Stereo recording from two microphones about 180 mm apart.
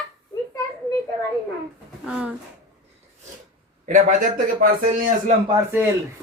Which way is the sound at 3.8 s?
45° right (ahead or behind).